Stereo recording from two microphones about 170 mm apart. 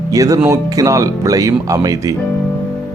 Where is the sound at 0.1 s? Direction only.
20° right (ahead or behind).